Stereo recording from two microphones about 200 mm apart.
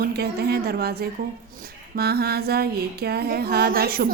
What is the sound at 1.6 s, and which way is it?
A woman's voice, 50° right (ahead or behind).